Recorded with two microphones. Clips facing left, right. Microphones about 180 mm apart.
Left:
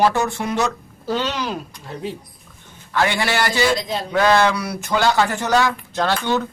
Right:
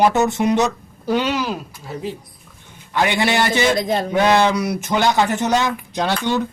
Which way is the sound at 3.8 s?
55° right (ahead or behind).